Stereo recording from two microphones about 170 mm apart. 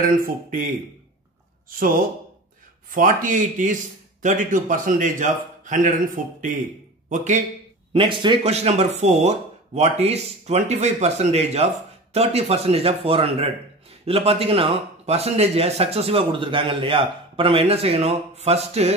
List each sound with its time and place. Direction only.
0.0 s a man's voice: 50° right (ahead or behind)
1.7 s a man's voice: 55° right (ahead or behind)
7.9 s speech: 30° right (ahead or behind)